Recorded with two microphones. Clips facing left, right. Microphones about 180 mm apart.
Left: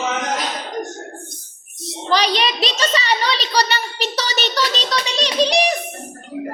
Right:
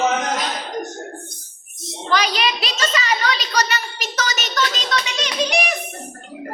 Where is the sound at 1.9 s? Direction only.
35° left (ahead or behind).